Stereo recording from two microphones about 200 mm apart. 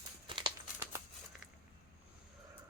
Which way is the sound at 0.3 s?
25° right (ahead or behind).